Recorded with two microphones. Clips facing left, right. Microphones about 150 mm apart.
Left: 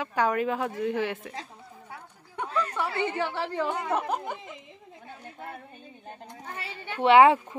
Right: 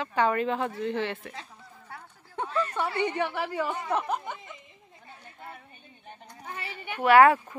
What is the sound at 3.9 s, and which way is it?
Speech, centre (ahead or behind).